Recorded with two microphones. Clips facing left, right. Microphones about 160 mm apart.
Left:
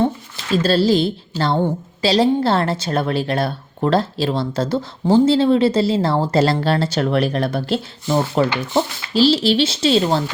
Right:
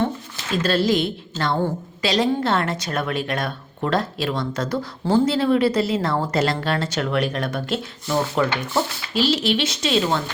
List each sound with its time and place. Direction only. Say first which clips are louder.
0.5 s a woman's voice: left 4 dB; 30° left (ahead or behind)